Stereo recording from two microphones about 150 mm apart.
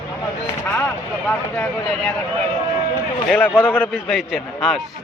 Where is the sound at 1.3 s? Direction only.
10° left (ahead or behind).